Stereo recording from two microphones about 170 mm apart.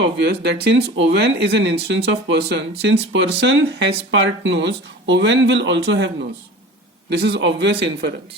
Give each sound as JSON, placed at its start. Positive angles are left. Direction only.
{"t": 0.0, "sound": "speech", "side_deg": -80}
{"t": 7.1, "sound": "speech", "side_deg": -85}